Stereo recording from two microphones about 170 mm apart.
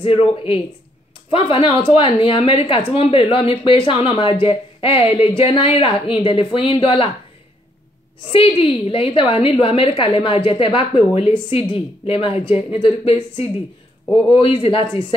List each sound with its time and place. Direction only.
0.0 s a woman's voice: 35° left (ahead or behind)
8.3 s a woman's voice: 30° left (ahead or behind)